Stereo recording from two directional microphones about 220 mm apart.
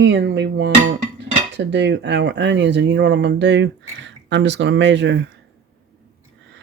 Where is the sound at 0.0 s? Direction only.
55° right (ahead or behind).